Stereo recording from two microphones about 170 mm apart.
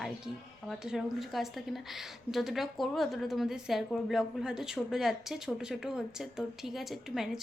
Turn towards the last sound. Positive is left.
turn(degrees=0)  # may be behind; listen again after turning